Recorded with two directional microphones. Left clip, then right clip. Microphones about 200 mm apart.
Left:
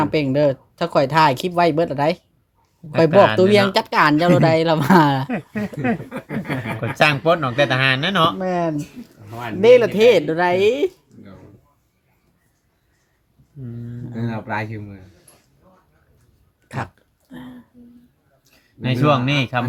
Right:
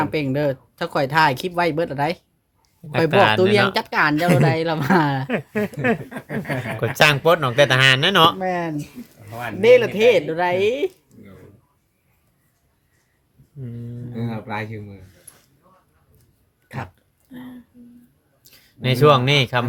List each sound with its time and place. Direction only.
0.0 s speech: 10° left (ahead or behind)
3.3 s speech: 10° left (ahead or behind)
5.3 s speech: 60° right (ahead or behind)
8.4 s speech: 10° left (ahead or behind)
14.3 s speech: 10° right (ahead or behind)
16.6 s speech: 20° left (ahead or behind)
18.4 s speech: 55° right (ahead or behind)